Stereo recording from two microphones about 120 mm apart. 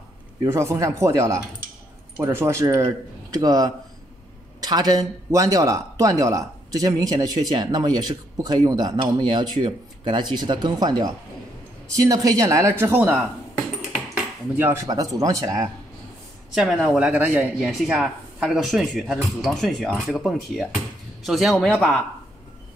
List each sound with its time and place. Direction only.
0.4 s speech: 25° right (ahead or behind)
14.6 s speech: 20° right (ahead or behind)
16.5 s speech: 5° right (ahead or behind)
17.6 s speech: centre (ahead or behind)